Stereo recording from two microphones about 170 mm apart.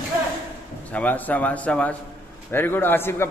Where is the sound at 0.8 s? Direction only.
10° left (ahead or behind).